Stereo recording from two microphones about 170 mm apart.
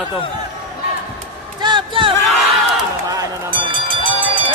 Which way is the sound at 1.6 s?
30° right (ahead or behind).